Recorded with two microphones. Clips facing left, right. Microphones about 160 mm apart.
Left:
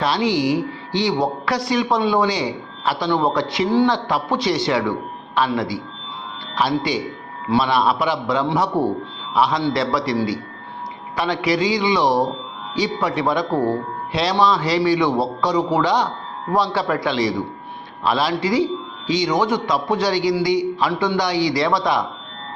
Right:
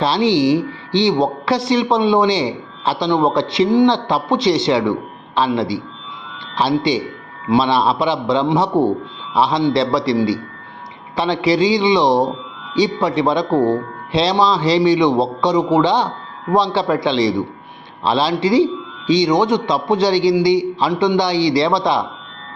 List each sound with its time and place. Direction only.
0.0 s a woman's voice: 25° right (ahead or behind)